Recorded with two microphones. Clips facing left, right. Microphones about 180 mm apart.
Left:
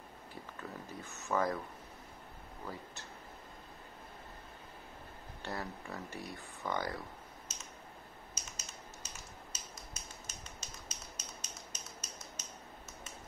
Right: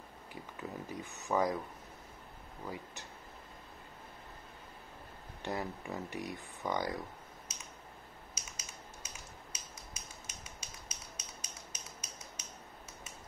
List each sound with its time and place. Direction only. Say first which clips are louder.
0.3 s speech: right 3 dB; 15° right (ahead or behind)
2.7 s speech: right 3 dB; 15° right (ahead or behind)
5.4 s speech: right 3 dB; 20° right (ahead or behind)
8.4 s finger snapping: even; 10° right (ahead or behind)